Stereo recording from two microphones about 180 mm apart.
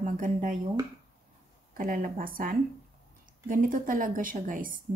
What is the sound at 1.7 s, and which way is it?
A woman's voice, 50° right (ahead or behind).